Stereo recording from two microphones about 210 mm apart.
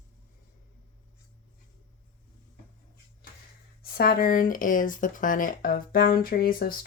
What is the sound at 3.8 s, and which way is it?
Speech, 45° left (ahead or behind).